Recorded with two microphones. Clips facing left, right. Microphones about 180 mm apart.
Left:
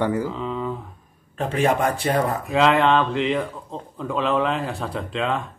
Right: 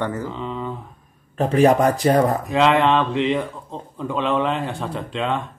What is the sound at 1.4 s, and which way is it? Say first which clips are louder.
Speech: right 5 dB; 40° right (ahead or behind).